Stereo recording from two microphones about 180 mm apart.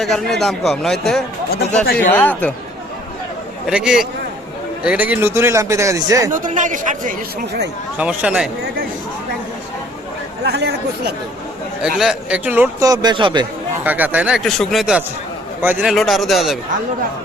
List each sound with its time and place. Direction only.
0.0 s a man's voice: centre (ahead or behind)
3.7 s a man's voice: 5° right (ahead or behind)
6.3 s speech: 45° right (ahead or behind)
7.9 s a man's voice: 5° right (ahead or behind)
10.4 s speech: 65° right (ahead or behind)
11.8 s a man's voice: 5° right (ahead or behind)
12.9 s speech: 25° right (ahead or behind)
13.8 s a man's voice: 10° right (ahead or behind)